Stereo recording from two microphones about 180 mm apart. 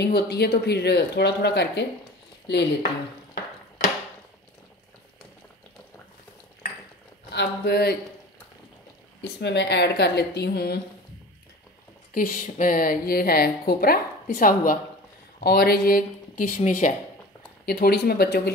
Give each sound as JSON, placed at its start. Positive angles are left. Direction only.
{"t": 0.0, "sound": "speech", "side_deg": 65}
{"t": 7.3, "sound": "speech", "side_deg": 60}
{"t": 9.2, "sound": "speech", "side_deg": 70}
{"t": 12.1, "sound": "a woman's voice", "side_deg": 50}
{"t": 17.6, "sound": "speech", "side_deg": 60}